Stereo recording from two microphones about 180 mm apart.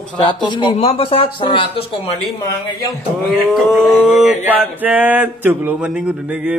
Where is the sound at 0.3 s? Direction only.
25° left (ahead or behind).